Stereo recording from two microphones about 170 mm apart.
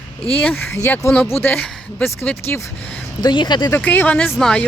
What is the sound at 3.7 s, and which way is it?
Speech, 10° left (ahead or behind).